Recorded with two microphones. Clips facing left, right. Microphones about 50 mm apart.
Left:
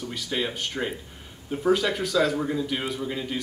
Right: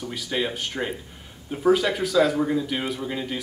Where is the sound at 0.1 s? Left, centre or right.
Centre.